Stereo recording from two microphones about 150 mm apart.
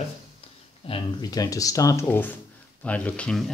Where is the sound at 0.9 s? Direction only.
25° left (ahead or behind).